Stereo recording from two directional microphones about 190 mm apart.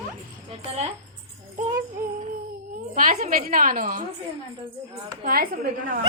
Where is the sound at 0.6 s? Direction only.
35° right (ahead or behind).